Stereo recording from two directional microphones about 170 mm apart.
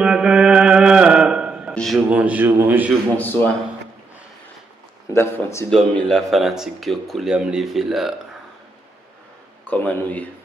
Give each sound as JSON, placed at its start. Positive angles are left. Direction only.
{"t": 0.0, "sound": "a sound", "side_deg": -5}
{"t": 2.0, "sound": "a man's voice", "side_deg": -10}
{"t": 3.2, "sound": "a man's voice", "side_deg": 10}
{"t": 5.1, "sound": "a man's voice", "side_deg": 15}
{"t": 5.7, "sound": "speech", "side_deg": 5}
{"t": 9.7, "sound": "a man's voice", "side_deg": 10}